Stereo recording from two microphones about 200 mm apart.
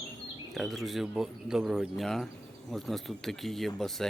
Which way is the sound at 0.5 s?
Centre (ahead or behind).